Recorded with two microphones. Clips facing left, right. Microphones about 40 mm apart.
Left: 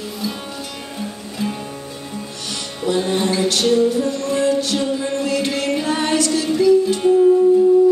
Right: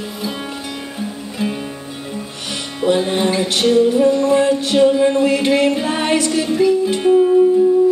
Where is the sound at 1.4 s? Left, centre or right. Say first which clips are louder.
Right 3 dB; centre.